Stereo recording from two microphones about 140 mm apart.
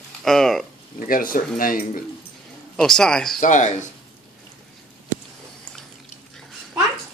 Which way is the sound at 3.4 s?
60° left (ahead or behind).